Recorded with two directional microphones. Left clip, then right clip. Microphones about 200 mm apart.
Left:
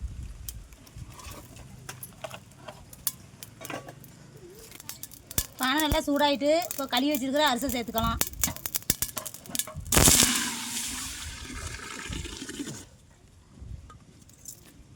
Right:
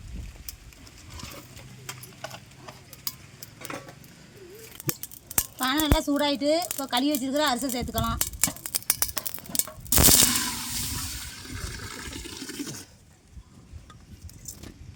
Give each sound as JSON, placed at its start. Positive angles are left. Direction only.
{"t": 2.2, "sound": "horse", "side_deg": 5}
{"t": 4.9, "sound": "speech", "side_deg": 10}
{"t": 8.6, "sound": "a sound", "side_deg": 0}